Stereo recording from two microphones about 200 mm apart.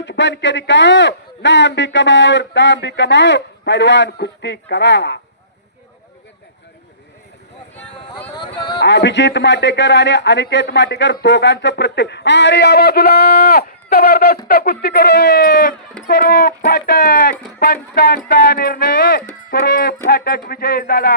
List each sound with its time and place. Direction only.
0.0 s speech: 65° left (ahead or behind)
8.4 s a sound: 25° left (ahead or behind)
8.8 s speech: 60° left (ahead or behind)